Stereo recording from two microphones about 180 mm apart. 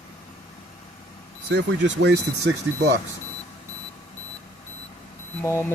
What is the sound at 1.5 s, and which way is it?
Speech, 75° right (ahead or behind).